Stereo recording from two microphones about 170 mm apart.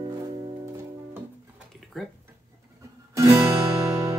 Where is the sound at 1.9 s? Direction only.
Centre (ahead or behind).